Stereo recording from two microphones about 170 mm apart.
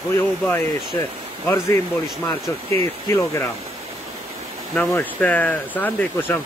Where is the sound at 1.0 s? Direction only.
15° left (ahead or behind).